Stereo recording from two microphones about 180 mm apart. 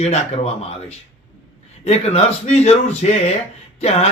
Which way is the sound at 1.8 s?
35° left (ahead or behind).